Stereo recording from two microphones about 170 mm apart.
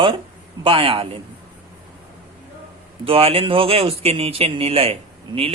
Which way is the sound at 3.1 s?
35° right (ahead or behind).